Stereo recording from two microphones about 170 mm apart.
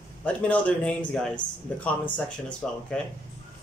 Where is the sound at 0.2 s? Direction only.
10° left (ahead or behind).